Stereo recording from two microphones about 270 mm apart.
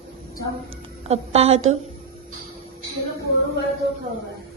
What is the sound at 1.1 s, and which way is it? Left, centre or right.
Speech, right.